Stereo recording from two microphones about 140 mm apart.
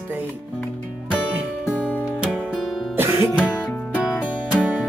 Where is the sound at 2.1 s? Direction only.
10° right (ahead or behind).